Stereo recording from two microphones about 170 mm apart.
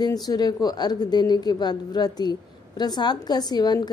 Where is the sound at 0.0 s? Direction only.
25° left (ahead or behind).